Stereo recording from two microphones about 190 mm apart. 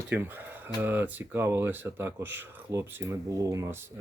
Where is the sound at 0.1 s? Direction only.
10° right (ahead or behind).